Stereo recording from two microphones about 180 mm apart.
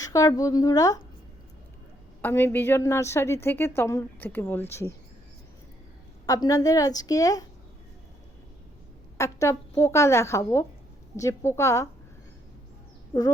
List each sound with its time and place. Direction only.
0.0 s a woman's voice: 20° left (ahead or behind)
2.2 s a woman's voice: 10° left (ahead or behind)
6.2 s a woman's voice: 20° left (ahead or behind)
9.1 s a woman's voice: 15° left (ahead or behind)